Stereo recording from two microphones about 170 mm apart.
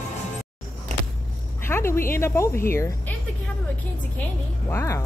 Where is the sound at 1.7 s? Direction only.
15° left (ahead or behind).